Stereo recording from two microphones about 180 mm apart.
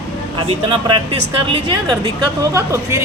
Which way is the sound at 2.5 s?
15° right (ahead or behind).